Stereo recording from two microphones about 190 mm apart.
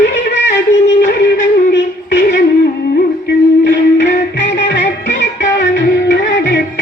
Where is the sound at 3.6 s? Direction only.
65° left (ahead or behind).